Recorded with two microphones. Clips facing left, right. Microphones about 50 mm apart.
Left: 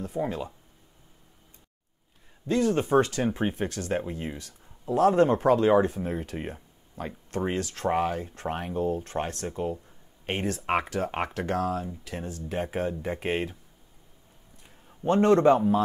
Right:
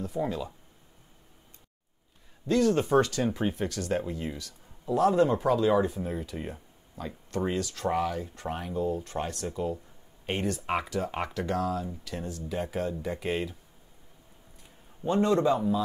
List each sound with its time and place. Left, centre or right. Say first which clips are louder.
0.2 s speech: left 1 dB; centre
2.4 s speech: even; left
15.2 s speech: left 6 dB; left